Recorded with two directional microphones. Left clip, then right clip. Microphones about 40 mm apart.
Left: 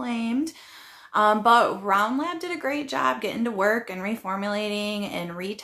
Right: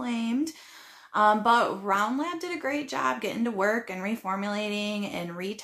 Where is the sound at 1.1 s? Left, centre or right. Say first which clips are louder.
Left 3 dB; left.